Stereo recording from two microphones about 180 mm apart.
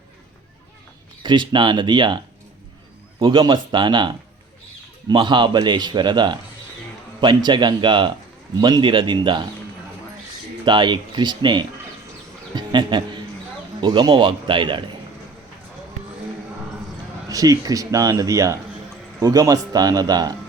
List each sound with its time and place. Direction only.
1.2 s a man's voice: 25° right (ahead or behind)
3.2 s a man's voice: 25° right (ahead or behind)
10.7 s a man's voice: 25° right (ahead or behind)
17.2 s a man's voice: 20° right (ahead or behind)